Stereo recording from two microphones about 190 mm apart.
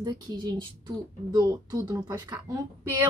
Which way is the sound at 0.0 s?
25° right (ahead or behind).